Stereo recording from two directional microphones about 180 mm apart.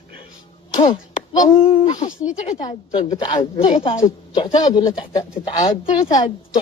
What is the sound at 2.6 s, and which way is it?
Speech, 25° left (ahead or behind).